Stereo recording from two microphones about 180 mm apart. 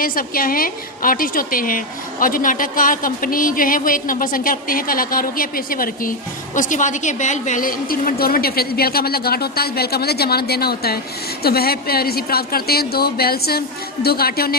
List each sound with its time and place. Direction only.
0.0 s a woman's voice: 55° left (ahead or behind)